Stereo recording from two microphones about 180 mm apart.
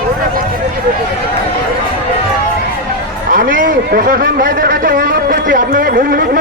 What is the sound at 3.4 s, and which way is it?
A man's voice, 50° right (ahead or behind).